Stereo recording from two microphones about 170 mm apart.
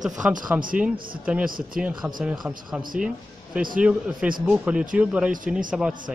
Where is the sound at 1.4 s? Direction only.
55° right (ahead or behind).